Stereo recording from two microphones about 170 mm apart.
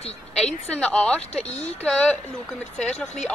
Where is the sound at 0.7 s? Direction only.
5° left (ahead or behind).